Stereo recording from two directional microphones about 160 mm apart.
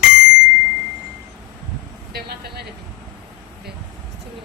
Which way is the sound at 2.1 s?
90° right.